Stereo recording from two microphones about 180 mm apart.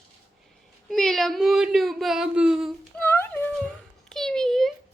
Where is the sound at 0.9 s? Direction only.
Centre (ahead or behind).